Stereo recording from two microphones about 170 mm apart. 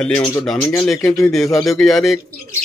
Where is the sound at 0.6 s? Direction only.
10° left (ahead or behind).